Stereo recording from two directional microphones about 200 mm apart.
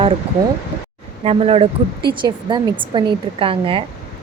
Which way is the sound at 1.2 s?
30° right (ahead or behind).